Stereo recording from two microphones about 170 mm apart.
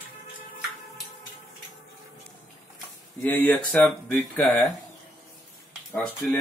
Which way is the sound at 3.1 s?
10° left (ahead or behind).